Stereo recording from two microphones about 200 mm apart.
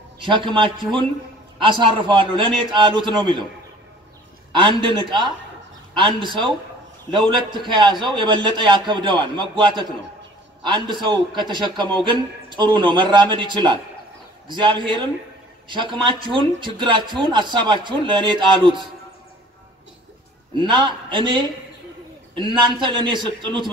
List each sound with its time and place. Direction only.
0.2 s speech: 25° right (ahead or behind)
4.5 s speech: 25° right (ahead or behind)
20.6 s speech: 25° right (ahead or behind)